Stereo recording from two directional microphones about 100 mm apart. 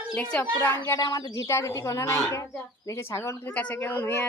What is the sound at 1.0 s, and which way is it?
Speech, 40° left (ahead or behind).